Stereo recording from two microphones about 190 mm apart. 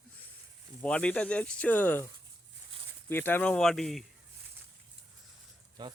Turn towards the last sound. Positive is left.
turn(degrees=-20)  # may be behind; listen again after turning